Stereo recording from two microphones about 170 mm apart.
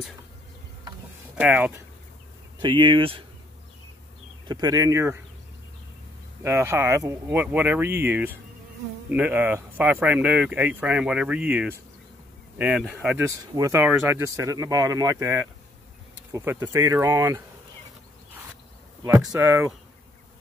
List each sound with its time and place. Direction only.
1.4 s speech: 10° right (ahead or behind)
2.6 s speech: 30° right (ahead or behind)
4.5 s speech: 25° right (ahead or behind)
6.4 s speech: 15° right (ahead or behind)
19.3 s speech: 15° right (ahead or behind)